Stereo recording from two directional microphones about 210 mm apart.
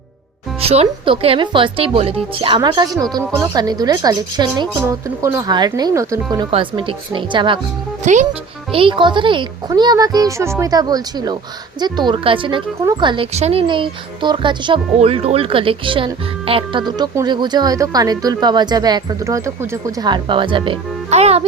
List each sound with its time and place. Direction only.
0.6 s speech: 30° right (ahead or behind)
8.0 s speech: 35° right (ahead or behind)
8.7 s speech: 25° right (ahead or behind)